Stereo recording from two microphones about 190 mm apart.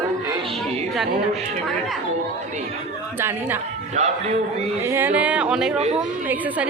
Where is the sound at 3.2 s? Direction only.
10° right (ahead or behind).